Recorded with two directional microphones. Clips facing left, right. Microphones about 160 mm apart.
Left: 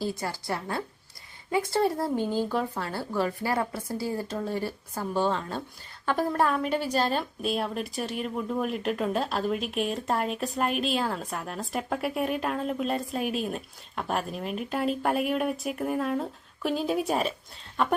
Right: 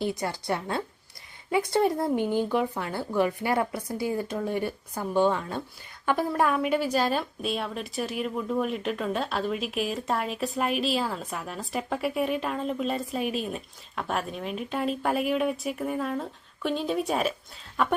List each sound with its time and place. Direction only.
0.0 s a woman's voice: 20° right (ahead or behind); by 17.3 s centre (ahead or behind)